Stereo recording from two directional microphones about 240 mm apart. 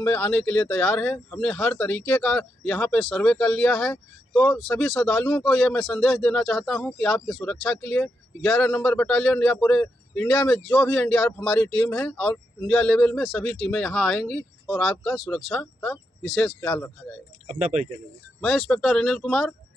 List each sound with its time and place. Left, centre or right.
0.0 s speech: centre
17.5 s speech: right
18.4 s speech: centre